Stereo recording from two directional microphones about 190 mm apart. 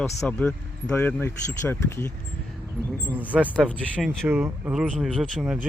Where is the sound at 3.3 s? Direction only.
Centre (ahead or behind).